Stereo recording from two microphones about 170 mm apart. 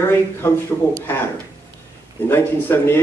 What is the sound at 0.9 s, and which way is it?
Speech, 10° left (ahead or behind).